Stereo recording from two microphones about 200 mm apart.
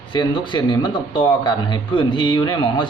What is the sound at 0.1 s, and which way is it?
A man's voice, 25° left (ahead or behind).